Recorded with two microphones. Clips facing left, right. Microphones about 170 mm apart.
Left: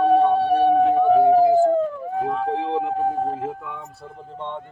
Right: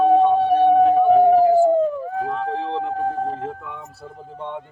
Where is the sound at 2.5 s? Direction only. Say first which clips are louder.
Left 1 dB; 15° left (ahead or behind).